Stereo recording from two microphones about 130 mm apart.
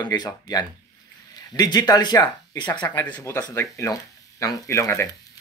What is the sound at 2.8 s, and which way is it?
Speech, 20° left (ahead or behind).